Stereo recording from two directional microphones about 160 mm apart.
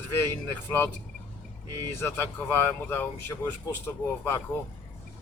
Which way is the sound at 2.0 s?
15° left (ahead or behind).